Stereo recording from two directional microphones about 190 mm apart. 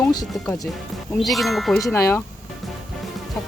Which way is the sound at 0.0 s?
20° left (ahead or behind).